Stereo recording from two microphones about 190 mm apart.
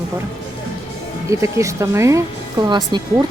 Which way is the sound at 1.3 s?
15° right (ahead or behind).